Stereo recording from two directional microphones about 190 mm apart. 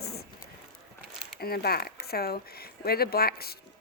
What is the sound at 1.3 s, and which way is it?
Speech, 55° left (ahead or behind).